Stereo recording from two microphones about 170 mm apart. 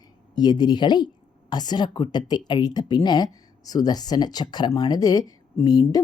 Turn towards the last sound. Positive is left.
turn(degrees=25)  # may be behind; listen again after turning